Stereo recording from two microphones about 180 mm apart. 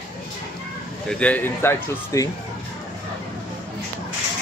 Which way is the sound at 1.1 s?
5° left (ahead or behind).